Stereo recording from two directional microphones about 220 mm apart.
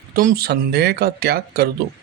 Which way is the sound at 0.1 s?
40° right (ahead or behind).